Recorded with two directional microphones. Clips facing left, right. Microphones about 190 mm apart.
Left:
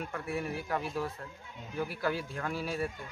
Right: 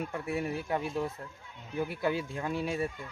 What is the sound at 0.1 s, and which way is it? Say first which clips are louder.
Speech: right 2 dB; 25° right (ahead or behind).